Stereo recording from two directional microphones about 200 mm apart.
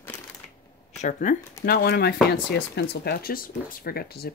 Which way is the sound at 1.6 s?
50° left (ahead or behind).